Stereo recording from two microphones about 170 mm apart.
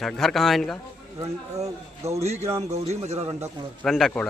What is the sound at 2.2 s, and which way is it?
Speech, 40° right (ahead or behind).